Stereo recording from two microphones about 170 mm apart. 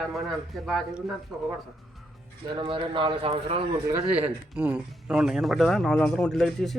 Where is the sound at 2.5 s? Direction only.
30° right (ahead or behind).